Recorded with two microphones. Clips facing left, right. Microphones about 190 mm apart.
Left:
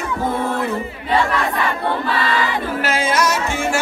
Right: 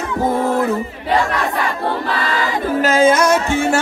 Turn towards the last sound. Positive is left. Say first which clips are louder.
# right 6 dB
turn(degrees=-50)  # may be behind; listen again after turning